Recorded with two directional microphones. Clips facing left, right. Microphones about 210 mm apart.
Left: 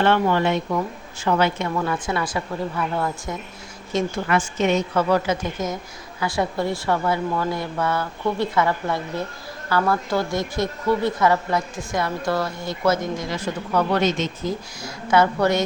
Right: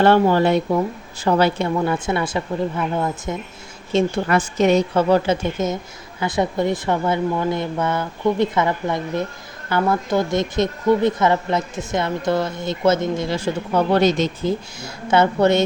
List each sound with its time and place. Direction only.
0.0 s speech: 35° right (ahead or behind); by 3.3 s 20° right (ahead or behind)
3.9 s speech: 35° right (ahead or behind)